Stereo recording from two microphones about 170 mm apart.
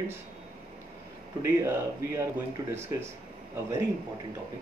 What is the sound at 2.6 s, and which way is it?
Speech, 20° right (ahead or behind).